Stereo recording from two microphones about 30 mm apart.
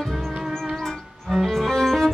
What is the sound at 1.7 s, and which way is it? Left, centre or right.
Music, centre.